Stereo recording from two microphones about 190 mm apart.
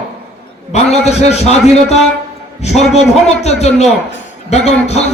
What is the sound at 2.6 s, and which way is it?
A man's voice, 35° left (ahead or behind).